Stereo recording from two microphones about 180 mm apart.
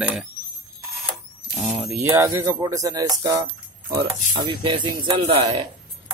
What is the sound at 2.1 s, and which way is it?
Speech, 15° right (ahead or behind).